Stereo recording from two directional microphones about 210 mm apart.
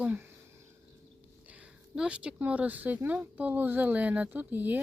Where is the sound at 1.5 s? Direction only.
5° right (ahead or behind).